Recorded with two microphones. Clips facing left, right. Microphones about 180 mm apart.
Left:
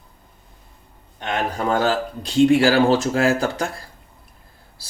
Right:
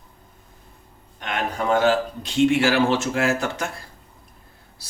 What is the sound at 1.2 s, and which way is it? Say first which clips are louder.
Speech: left 2 dB; 35° left (ahead or behind).